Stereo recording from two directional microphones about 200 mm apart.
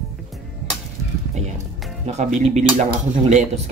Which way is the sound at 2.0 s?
35° right (ahead or behind).